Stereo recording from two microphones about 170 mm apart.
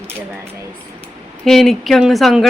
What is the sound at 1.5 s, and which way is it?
Speech, centre (ahead or behind).